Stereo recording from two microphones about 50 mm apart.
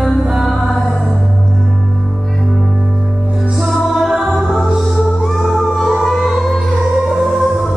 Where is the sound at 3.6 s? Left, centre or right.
Centre.